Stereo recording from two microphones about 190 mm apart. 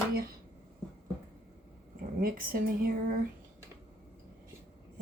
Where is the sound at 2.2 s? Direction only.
50° right (ahead or behind).